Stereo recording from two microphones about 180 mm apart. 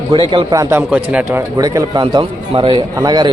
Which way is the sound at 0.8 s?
10° right (ahead or behind).